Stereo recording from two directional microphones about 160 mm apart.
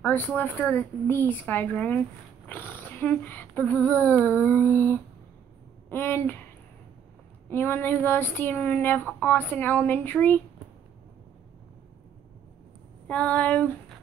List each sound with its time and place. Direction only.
0.0 s speech: 10° left (ahead or behind)
7.4 s speech: 15° left (ahead or behind)
13.0 s speech: 5° left (ahead or behind)